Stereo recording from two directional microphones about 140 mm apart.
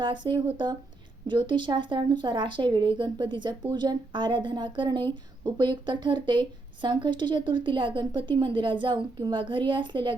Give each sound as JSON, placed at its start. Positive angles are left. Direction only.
{"t": 0.0, "sound": "speech", "side_deg": -35}